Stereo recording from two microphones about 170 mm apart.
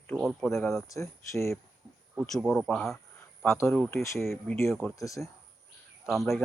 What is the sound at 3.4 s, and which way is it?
Speech, 15° left (ahead or behind).